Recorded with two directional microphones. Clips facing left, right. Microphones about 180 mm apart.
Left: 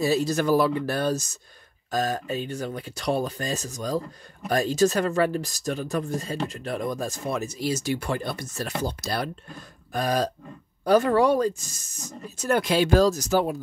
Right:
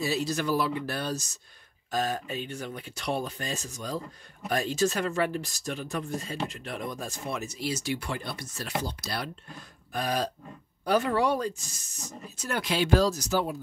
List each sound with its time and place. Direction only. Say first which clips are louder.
0.0 s speech: left 6 dB; 45° left (ahead or behind)